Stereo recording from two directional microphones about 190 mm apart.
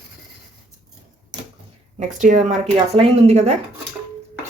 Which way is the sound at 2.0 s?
40° right (ahead or behind).